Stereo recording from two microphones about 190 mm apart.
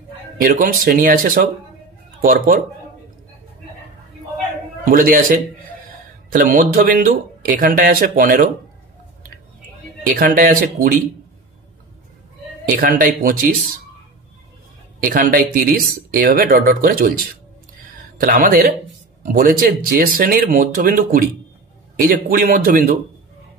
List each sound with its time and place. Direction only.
0.4 s speech: 50° right (ahead or behind)
4.8 s speech: 45° right (ahead or behind)
10.1 s speech: 50° right (ahead or behind)
12.6 s speech: 50° right (ahead or behind)
15.0 s speech: 50° right (ahead or behind)
18.2 s speech: 50° right (ahead or behind)